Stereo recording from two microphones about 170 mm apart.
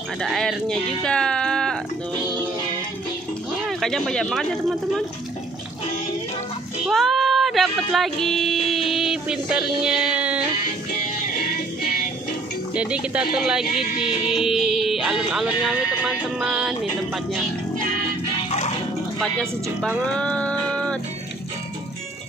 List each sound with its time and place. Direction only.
0.2 s speech: centre (ahead or behind)
3.6 s speech: centre (ahead or behind)
6.9 s speech: centre (ahead or behind)
11.3 s music: 60° left (ahead or behind)
12.7 s speech: 5° right (ahead or behind)
14.0 s music: 35° left (ahead or behind)
14.4 s speech: centre (ahead or behind)
19.2 s speech: 5° left (ahead or behind)
20.1 s music: 5° left (ahead or behind)